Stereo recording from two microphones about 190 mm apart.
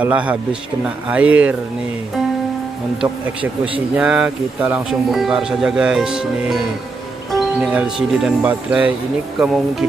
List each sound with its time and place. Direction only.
0.0 s speech: 5° right (ahead or behind)
3.7 s speech: 5° right (ahead or behind)